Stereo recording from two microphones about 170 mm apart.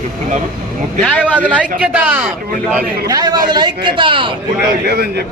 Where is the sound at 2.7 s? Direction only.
20° right (ahead or behind).